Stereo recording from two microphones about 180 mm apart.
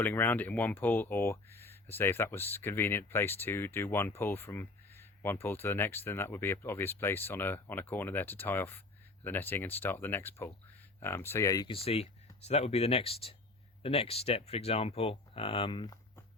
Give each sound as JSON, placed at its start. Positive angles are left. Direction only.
{"t": 0.0, "sound": "speech", "side_deg": 10}
{"t": 11.7, "sound": "speech", "side_deg": 35}